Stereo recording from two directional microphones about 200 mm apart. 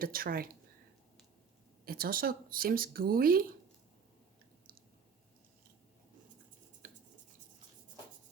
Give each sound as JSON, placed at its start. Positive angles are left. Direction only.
{"t": 0.0, "sound": "speech", "side_deg": -45}
{"t": 1.8, "sound": "speech", "side_deg": -45}
{"t": 6.8, "sound": "a sound", "side_deg": -40}